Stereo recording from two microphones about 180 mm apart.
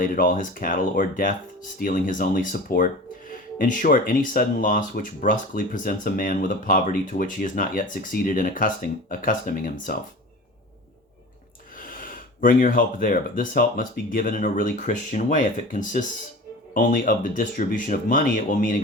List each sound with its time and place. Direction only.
0.0 s speech: 50° left (ahead or behind)
11.8 s speech: 50° left (ahead or behind)